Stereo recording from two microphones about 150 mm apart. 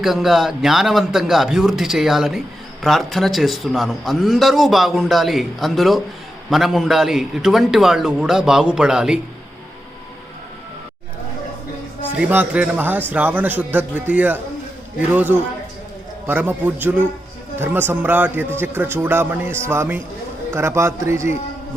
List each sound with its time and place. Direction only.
0.0 s a man's voice: centre (ahead or behind)
12.1 s a man's voice: 10° right (ahead or behind)